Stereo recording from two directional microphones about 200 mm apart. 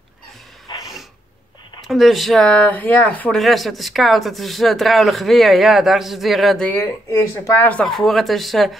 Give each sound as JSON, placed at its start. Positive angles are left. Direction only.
{"t": 0.7, "sound": "snort", "side_deg": 20}
{"t": 1.8, "sound": "speech", "side_deg": 0}